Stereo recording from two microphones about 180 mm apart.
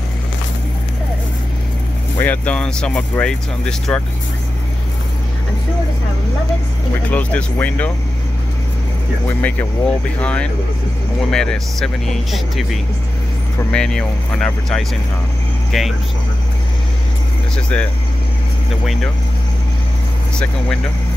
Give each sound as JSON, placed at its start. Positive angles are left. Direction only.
{"t": 2.1, "sound": "speech", "side_deg": 10}
{"t": 7.1, "sound": "speech", "side_deg": 10}
{"t": 9.4, "sound": "speech", "side_deg": 10}
{"t": 13.7, "sound": "speech", "side_deg": 5}
{"t": 17.6, "sound": "speech", "side_deg": 5}